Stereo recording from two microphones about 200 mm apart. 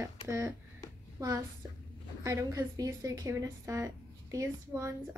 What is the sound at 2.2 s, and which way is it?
A woman's voice, 15° right (ahead or behind).